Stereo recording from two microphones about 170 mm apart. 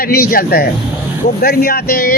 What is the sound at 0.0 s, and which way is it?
Speech, 65° left (ahead or behind).